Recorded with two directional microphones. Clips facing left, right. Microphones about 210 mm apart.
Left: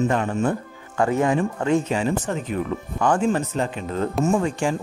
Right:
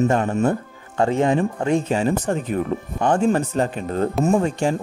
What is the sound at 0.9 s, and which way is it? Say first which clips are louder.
Speech: right 2 dB; 25° right (ahead or behind).